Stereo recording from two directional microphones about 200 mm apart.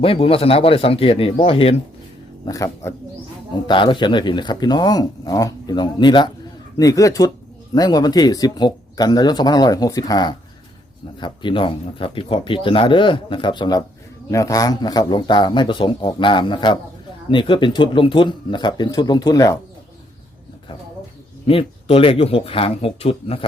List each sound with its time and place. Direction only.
0.0 s speech: 30° left (ahead or behind)
2.5 s speech: 15° left (ahead or behind)
21.4 s speech: 25° left (ahead or behind)